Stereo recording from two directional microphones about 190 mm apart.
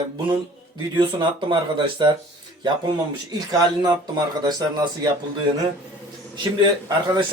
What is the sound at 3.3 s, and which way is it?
Speech, 20° right (ahead or behind).